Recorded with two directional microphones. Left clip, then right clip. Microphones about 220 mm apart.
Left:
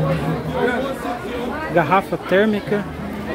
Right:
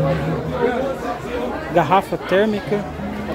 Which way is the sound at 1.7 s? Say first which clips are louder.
Right 1 dB; 5° left (ahead or behind).